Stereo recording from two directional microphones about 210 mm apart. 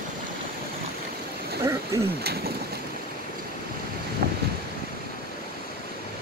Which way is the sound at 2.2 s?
50° right (ahead or behind).